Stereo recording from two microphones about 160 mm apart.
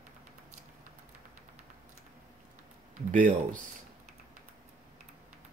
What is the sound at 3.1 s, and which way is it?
Speech, 50° right (ahead or behind).